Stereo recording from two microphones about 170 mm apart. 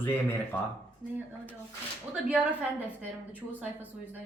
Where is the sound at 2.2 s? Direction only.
5° right (ahead or behind).